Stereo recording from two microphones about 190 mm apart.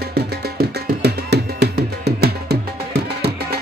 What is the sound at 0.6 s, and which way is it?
Music, 60° right (ahead or behind).